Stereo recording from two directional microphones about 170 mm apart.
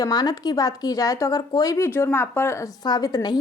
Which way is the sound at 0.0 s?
25° left (ahead or behind).